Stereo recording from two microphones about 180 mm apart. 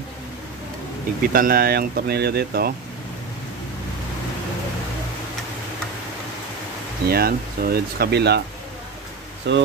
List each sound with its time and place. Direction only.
1.2 s speech: 55° right (ahead or behind)
7.1 s speech: 60° right (ahead or behind)
9.5 s speech: 75° right (ahead or behind)